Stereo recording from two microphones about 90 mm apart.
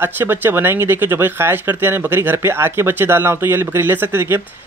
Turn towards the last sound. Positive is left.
turn(degrees=-25)  # may be behind; listen again after turning